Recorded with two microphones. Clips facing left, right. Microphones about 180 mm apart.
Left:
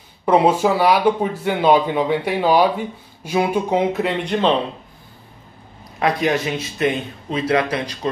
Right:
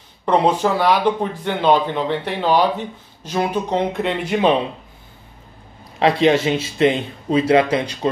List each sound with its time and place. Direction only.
0.2 s speech: 5° left (ahead or behind); by 4.6 s 10° right (ahead or behind)
5.9 s speech: 25° right (ahead or behind)